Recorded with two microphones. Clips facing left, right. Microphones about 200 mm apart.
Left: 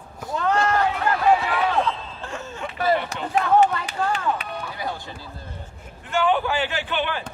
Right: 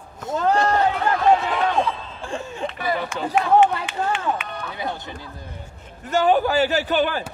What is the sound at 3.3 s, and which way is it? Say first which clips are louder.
Speech: right 1 dB; 40° left (ahead or behind).